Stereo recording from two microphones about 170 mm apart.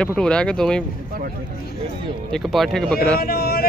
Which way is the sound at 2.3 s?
Centre (ahead or behind).